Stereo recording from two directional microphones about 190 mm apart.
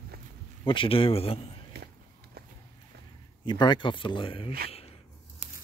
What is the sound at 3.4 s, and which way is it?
Speech, 25° left (ahead or behind).